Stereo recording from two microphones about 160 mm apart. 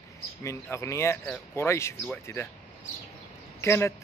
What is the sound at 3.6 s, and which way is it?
Speech, 15° left (ahead or behind).